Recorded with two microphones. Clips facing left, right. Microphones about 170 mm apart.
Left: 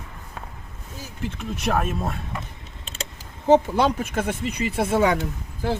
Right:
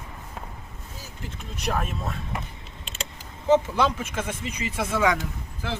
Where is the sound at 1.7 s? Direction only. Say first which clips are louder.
Left 4 dB; 50° left (ahead or behind).